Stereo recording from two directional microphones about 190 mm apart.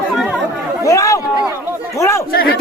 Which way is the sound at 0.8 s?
15° left (ahead or behind).